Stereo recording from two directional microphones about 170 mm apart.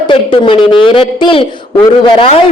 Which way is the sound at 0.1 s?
30° left (ahead or behind).